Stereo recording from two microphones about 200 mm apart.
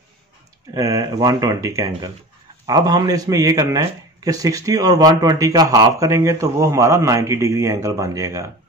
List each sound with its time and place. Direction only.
0.7 s speech: 15° right (ahead or behind)